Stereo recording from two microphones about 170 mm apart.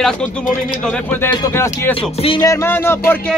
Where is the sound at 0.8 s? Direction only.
10° left (ahead or behind).